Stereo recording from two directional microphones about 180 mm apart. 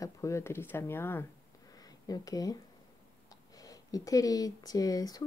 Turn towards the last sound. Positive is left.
turn(degrees=20)  # may be behind; listen again after turning